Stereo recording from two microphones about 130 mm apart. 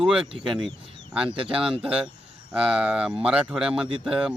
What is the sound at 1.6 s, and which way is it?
Speech, 5° right (ahead or behind).